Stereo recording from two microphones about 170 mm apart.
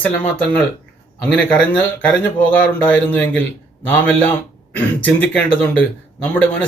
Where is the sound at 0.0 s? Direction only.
5° left (ahead or behind).